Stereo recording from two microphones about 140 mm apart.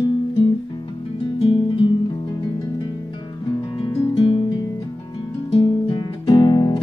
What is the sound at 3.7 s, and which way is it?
Music, 35° left (ahead or behind).